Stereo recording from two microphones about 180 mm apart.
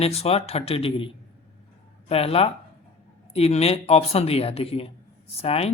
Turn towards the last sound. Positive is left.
turn(degrees=35)  # may be behind; listen again after turning